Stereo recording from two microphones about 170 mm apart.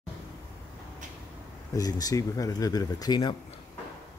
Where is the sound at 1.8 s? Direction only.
20° left (ahead or behind).